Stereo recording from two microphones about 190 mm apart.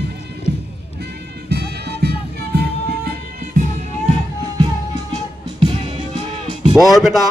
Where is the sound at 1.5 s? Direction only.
60° right (ahead or behind).